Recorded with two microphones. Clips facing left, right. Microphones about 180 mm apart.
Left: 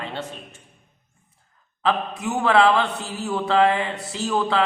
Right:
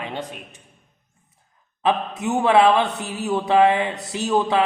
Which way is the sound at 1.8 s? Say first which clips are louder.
Right 2 dB; 20° right (ahead or behind).